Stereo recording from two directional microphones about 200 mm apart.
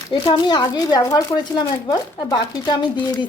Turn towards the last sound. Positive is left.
turn(degrees=20)  # may be behind; listen again after turning